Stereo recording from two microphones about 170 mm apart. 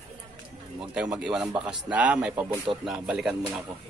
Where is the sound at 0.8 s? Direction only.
5° right (ahead or behind).